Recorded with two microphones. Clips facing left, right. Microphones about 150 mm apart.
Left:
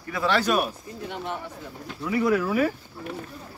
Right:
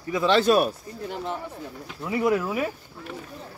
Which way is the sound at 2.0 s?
20° right (ahead or behind).